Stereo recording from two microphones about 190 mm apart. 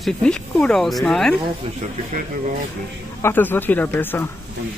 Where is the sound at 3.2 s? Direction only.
10° left (ahead or behind).